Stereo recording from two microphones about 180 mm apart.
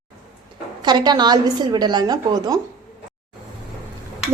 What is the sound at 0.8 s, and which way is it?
A woman's voice, 25° right (ahead or behind).